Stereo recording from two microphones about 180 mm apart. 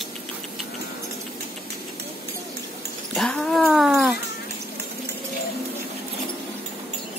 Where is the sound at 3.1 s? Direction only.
5° left (ahead or behind).